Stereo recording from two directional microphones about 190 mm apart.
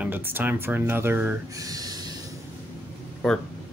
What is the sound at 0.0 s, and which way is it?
Speech, 10° right (ahead or behind).